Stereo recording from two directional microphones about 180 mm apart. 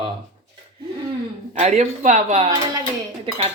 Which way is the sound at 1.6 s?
40° right (ahead or behind).